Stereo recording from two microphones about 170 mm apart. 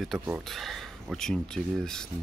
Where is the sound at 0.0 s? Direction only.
Centre (ahead or behind).